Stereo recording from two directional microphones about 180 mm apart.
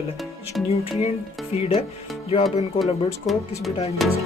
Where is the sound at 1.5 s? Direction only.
35° left (ahead or behind).